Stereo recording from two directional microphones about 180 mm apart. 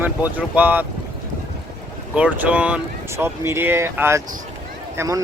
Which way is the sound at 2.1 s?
5° right (ahead or behind).